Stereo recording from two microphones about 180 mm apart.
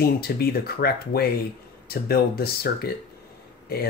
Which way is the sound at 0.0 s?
60° left (ahead or behind).